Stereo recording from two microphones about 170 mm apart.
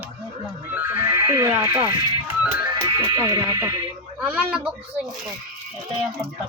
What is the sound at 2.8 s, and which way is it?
Speech, 20° right (ahead or behind).